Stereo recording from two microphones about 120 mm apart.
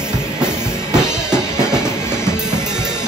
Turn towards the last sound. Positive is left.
turn(degrees=-5)  # may be behind; listen again after turning